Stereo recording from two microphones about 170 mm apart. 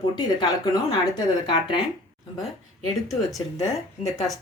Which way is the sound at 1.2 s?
25° left (ahead or behind).